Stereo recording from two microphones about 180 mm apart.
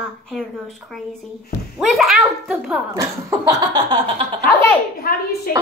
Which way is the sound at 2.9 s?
20° right (ahead or behind).